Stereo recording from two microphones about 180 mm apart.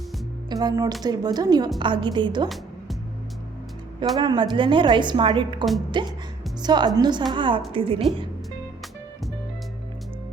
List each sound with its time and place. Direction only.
0.5 s a woman's voice: 20° right (ahead or behind)
4.2 s a woman's voice: 25° right (ahead or behind)